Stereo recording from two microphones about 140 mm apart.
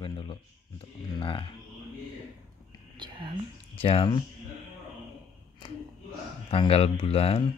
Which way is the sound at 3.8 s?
40° left (ahead or behind).